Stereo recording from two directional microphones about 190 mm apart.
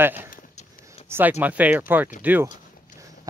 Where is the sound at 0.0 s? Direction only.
10° right (ahead or behind).